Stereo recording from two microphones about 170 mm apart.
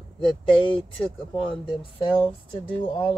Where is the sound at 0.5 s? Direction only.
30° left (ahead or behind).